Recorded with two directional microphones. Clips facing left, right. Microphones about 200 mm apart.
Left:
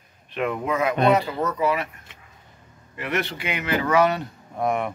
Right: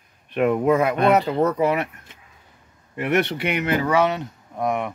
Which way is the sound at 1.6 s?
60° right (ahead or behind).